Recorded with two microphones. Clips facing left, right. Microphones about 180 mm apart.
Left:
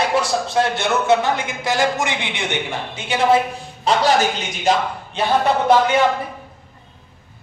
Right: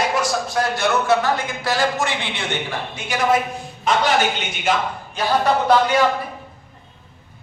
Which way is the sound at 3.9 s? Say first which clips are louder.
Left 2 dB; 35° left (ahead or behind).